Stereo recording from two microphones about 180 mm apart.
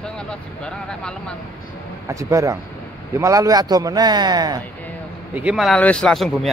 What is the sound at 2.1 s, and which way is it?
Speech, 15° right (ahead or behind).